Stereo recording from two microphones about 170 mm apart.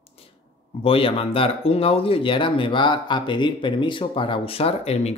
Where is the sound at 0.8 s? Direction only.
35° left (ahead or behind).